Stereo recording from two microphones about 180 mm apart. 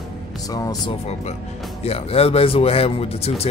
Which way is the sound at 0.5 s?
20° left (ahead or behind).